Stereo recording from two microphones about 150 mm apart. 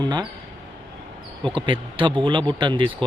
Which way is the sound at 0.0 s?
30° right (ahead or behind).